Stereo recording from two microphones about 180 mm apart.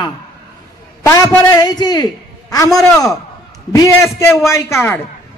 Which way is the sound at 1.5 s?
20° left (ahead or behind).